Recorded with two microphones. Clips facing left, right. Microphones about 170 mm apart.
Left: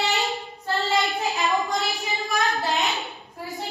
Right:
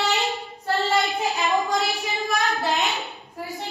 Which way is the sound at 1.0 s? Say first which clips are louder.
Right 1 dB; centre (ahead or behind).